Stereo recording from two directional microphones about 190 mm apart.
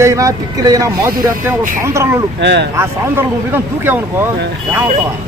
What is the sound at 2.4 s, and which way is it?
Speech, 65° right (ahead or behind).